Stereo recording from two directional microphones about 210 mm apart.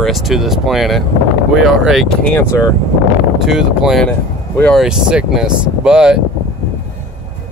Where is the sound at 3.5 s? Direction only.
Centre (ahead or behind).